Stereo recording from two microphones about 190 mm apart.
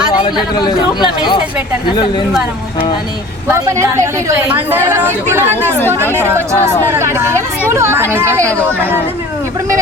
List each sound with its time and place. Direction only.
0.6 s speech: 25° left (ahead or behind)
3.5 s a woman's voice: 15° right (ahead or behind)